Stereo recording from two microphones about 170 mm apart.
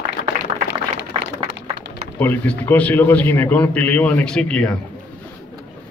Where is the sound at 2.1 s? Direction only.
10° left (ahead or behind).